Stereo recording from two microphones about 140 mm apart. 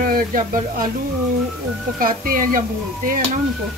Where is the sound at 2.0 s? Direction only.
85° right.